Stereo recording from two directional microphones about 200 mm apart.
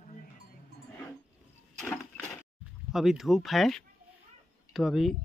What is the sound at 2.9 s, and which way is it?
Speech, centre (ahead or behind).